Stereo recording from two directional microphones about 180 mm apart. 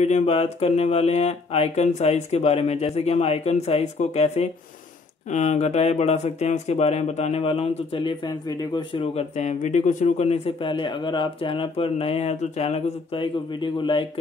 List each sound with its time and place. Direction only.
0.0 s speech: 40° left (ahead or behind)